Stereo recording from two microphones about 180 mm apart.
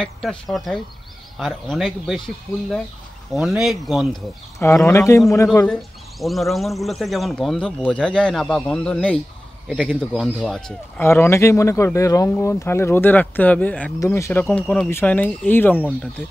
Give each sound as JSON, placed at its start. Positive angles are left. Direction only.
{"t": 0.0, "sound": "speech", "side_deg": 0}
{"t": 4.6, "sound": "speech", "side_deg": 15}
{"t": 5.7, "sound": "speech", "side_deg": 0}
{"t": 11.0, "sound": "speech", "side_deg": 15}